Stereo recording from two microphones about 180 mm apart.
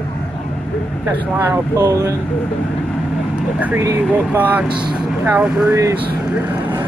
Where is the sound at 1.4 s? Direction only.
20° right (ahead or behind).